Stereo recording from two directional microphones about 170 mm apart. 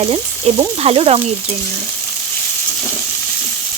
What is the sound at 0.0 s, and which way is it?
Frying, 35° right (ahead or behind).